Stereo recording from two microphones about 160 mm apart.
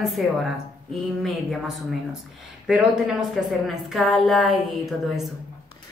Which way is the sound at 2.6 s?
Centre (ahead or behind).